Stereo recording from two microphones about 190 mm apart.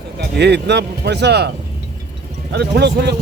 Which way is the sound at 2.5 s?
60° right (ahead or behind).